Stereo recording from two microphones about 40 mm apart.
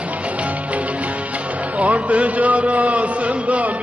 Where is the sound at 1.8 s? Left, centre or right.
Right.